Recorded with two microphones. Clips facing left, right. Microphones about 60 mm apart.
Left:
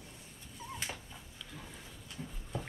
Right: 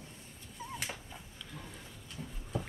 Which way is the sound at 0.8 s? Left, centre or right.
Centre.